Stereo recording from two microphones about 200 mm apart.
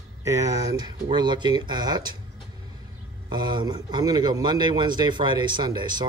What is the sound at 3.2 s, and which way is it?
A man's voice, 20° right (ahead or behind).